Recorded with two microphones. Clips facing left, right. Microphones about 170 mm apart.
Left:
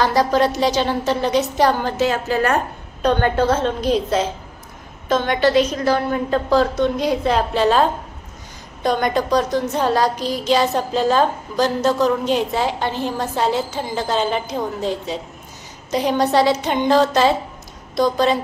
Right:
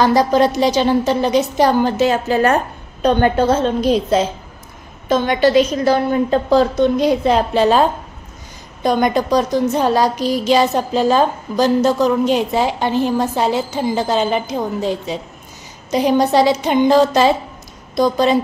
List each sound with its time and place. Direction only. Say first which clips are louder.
0.0 s a woman's voice: right 3 dB; 15° right (ahead or behind)
8.8 s speech: right 3 dB; 15° right (ahead or behind)